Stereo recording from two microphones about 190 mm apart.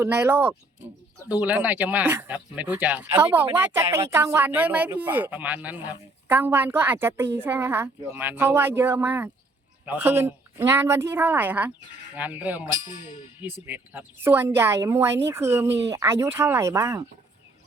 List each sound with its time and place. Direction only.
0.0 s speech: 10° right (ahead or behind)